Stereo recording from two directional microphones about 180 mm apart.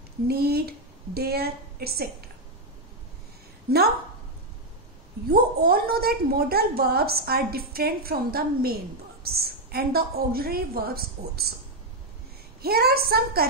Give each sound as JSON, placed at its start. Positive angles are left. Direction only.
{"t": 0.3, "sound": "a woman's voice", "side_deg": -60}
{"t": 5.3, "sound": "a woman's voice", "side_deg": -60}
{"t": 12.6, "sound": "a woman's voice", "side_deg": -60}